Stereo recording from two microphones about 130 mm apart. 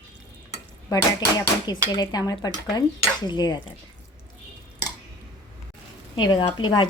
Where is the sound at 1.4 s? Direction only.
35° left (ahead or behind).